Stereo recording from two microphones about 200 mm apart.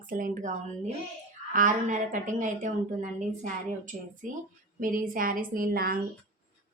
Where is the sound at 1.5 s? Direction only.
40° right (ahead or behind).